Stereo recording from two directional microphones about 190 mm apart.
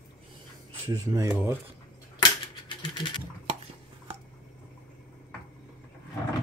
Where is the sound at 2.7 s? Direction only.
25° left (ahead or behind).